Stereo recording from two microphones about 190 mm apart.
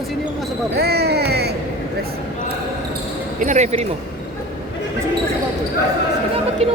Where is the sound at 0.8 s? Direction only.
60° right (ahead or behind).